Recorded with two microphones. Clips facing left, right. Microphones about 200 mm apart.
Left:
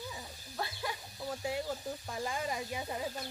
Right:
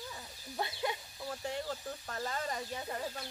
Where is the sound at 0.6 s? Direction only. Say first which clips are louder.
Right 3 dB; 20° right (ahead or behind).